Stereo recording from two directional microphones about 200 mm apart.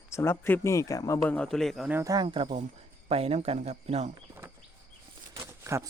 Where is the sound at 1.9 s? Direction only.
15° right (ahead or behind); by 4.1 s 35° right (ahead or behind).